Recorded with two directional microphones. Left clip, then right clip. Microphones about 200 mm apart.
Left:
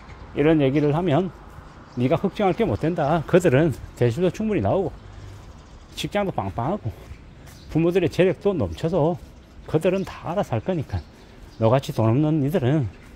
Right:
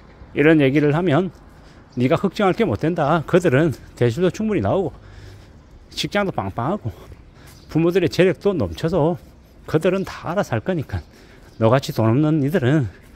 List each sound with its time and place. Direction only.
0.3 s speech: 30° right (ahead or behind)
5.9 s speech: 25° right (ahead or behind)